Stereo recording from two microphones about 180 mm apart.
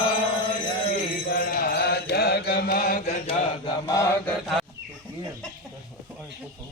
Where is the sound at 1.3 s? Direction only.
55° left (ahead or behind).